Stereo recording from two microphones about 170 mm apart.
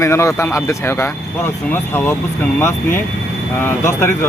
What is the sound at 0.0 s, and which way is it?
Speech, 15° left (ahead or behind).